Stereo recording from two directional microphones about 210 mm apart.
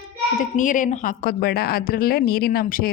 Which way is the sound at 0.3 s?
40° left (ahead or behind).